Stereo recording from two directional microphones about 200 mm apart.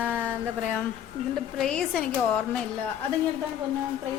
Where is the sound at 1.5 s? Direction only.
5° left (ahead or behind).